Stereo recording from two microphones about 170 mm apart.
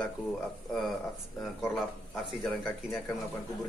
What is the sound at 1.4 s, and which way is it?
Speech, centre (ahead or behind).